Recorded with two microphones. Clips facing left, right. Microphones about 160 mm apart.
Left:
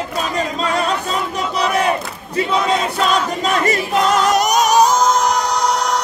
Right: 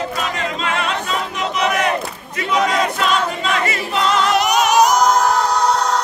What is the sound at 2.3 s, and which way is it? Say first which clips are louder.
Crowd: left 1 dB; 30° left (ahead or behind).